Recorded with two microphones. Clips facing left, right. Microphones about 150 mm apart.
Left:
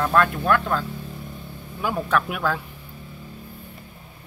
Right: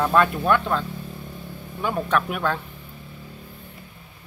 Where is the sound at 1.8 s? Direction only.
Centre (ahead or behind).